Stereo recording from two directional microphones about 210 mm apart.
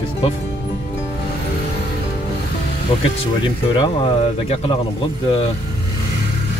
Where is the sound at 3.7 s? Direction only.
25° left (ahead or behind).